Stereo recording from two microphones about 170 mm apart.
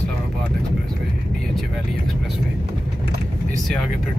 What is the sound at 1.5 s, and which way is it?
Vehicle, centre (ahead or behind).